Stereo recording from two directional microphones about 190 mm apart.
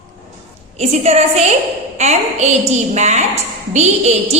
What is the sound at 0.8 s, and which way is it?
A woman's voice, 35° right (ahead or behind).